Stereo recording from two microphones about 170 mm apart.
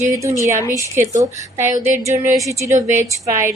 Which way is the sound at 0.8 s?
15° right (ahead or behind).